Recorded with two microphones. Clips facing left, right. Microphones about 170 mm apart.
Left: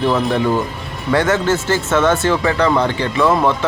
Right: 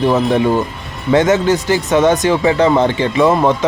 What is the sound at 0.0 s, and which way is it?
Speech, 20° right (ahead or behind).